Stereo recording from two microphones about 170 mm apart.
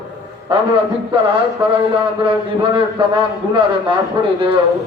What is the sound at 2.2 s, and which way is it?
A man's voice, 30° right (ahead or behind).